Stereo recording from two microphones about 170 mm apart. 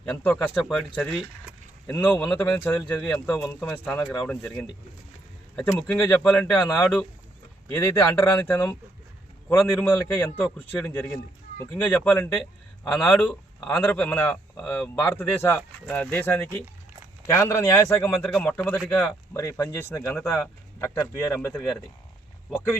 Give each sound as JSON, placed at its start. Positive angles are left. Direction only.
{"t": 0.0, "sound": "a man's voice", "side_deg": 10}
{"t": 3.7, "sound": "a man's voice", "side_deg": 15}
{"t": 5.5, "sound": "a man's voice", "side_deg": 15}